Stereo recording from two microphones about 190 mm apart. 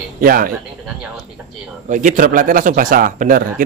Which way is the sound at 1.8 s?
45° right (ahead or behind).